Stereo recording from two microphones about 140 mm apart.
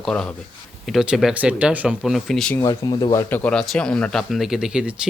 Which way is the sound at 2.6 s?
25° left (ahead or behind).